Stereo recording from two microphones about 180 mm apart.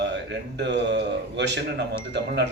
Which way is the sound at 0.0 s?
70° right (ahead or behind).